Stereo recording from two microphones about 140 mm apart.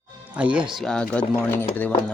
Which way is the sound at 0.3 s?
10° right (ahead or behind).